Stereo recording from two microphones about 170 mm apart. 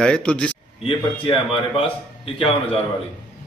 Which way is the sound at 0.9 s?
30° left (ahead or behind).